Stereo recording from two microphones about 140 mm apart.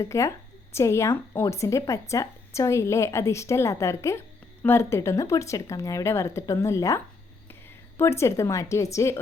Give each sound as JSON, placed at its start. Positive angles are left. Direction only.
{"t": 0.0, "sound": "a woman's voice", "side_deg": 20}